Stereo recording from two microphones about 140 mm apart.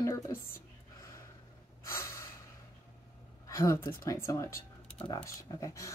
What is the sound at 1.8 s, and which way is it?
Gasp, 20° left (ahead or behind).